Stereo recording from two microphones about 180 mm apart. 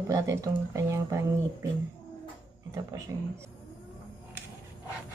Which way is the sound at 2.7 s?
15° right (ahead or behind).